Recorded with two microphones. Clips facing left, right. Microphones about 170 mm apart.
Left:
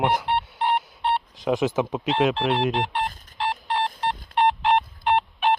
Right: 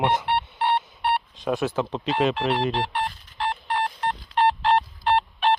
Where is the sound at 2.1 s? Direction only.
Centre (ahead or behind).